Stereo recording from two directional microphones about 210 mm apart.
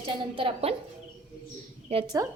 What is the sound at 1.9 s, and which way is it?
Speech, 20° right (ahead or behind).